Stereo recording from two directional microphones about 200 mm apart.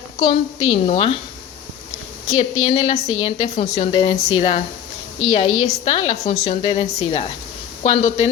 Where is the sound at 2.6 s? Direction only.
35° left (ahead or behind).